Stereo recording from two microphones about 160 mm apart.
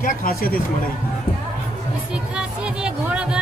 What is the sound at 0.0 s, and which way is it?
Speech, 60° left (ahead or behind).